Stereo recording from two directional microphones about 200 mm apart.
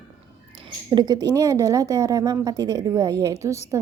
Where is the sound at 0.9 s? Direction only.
20° right (ahead or behind).